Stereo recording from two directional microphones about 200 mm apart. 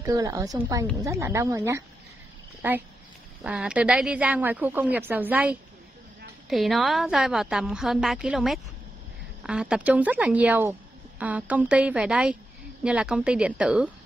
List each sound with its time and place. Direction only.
0.0 s a woman's voice: 15° right (ahead or behind)